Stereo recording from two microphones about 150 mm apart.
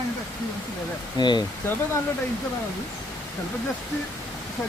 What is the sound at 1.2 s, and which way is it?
Speech, 30° left (ahead or behind).